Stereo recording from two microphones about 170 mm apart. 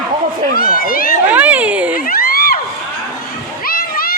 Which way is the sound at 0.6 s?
60° left (ahead or behind).